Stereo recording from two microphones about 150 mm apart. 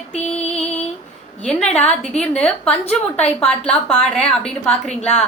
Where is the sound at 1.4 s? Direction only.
5° left (ahead or behind).